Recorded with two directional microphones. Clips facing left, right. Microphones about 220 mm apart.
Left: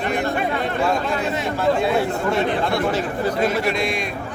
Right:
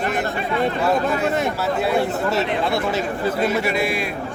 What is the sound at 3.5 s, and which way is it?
Speech, 5° right (ahead or behind).